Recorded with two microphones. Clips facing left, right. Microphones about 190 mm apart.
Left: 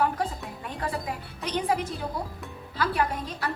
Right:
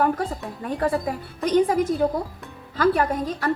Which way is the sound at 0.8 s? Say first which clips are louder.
Right 8 dB; 45° right (ahead or behind).